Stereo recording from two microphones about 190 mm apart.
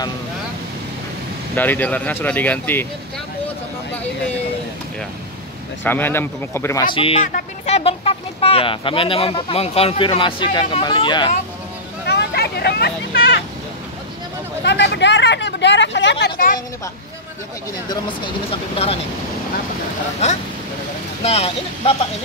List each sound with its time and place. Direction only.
1.5 s speech: 10° left (ahead or behind)
5.9 s speech: 10° left (ahead or behind)
12.1 s vehicle: 60° left (ahead or behind)
14.6 s speech: 65° left (ahead or behind); by 16.5 s 50° left (ahead or behind)
17.8 s speech: 25° left (ahead or behind)
20.2 s speech: 35° left (ahead or behind)